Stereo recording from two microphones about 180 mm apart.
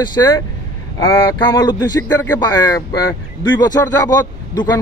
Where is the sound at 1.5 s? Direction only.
20° left (ahead or behind).